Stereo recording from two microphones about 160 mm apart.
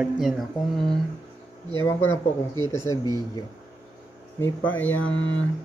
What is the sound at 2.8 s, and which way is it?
Speech, 20° left (ahead or behind).